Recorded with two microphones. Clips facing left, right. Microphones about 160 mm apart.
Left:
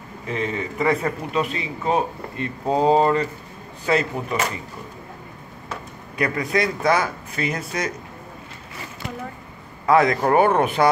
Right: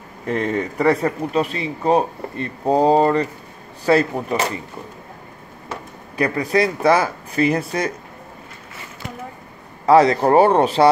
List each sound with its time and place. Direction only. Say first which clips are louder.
0.3 s speech: right 5 dB; 50° right (ahead or behind); by 4.6 s 30° right (ahead or behind)
6.1 s speech: right 4 dB; 30° right (ahead or behind)
9.8 s speech: right 4 dB; 35° right (ahead or behind)